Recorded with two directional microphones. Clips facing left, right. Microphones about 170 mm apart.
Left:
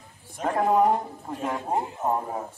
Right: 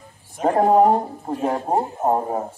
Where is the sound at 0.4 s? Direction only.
35° right (ahead or behind).